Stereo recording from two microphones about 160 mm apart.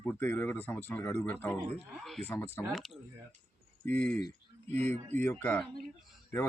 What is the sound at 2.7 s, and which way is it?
Speech, centre (ahead or behind).